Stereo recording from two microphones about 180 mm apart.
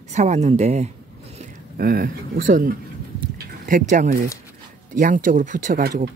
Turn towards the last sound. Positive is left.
turn(degrees=-45)  # may be behind; listen again after turning